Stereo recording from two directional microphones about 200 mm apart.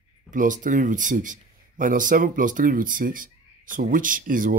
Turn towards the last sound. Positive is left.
turn(degrees=-45)  # may be behind; listen again after turning